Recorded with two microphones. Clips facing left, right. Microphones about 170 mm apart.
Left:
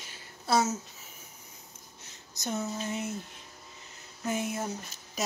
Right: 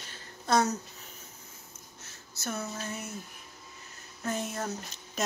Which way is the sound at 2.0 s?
15° left (ahead or behind).